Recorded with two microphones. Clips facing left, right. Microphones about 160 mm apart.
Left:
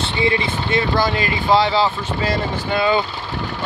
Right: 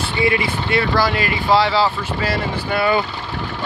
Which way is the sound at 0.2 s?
25° left (ahead or behind).